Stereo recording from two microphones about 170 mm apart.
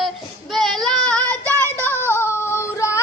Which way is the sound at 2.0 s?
15° left (ahead or behind).